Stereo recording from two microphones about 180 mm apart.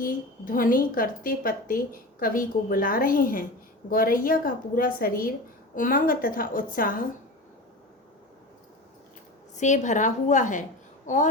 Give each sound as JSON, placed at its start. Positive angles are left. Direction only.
{"t": 0.0, "sound": "a woman's voice", "side_deg": 50}
{"t": 9.6, "sound": "a woman's voice", "side_deg": 40}